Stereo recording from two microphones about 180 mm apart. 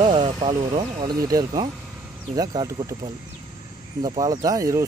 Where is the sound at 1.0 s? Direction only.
20° right (ahead or behind).